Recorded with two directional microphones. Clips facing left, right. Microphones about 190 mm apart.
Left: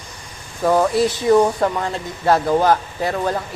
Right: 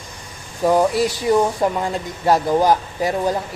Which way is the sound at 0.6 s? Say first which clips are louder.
Even; 15° right (ahead or behind).